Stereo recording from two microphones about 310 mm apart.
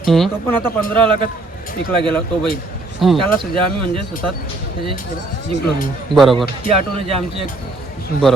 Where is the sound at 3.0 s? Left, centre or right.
Centre.